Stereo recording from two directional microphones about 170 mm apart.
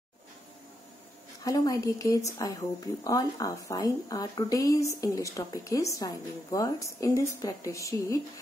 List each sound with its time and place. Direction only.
1.4 s speech: 20° left (ahead or behind)